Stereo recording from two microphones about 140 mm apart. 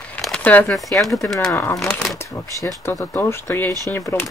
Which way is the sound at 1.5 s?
20° left (ahead or behind).